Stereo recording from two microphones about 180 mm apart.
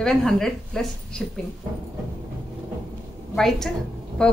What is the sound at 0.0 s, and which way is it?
Speech, 5° left (ahead or behind).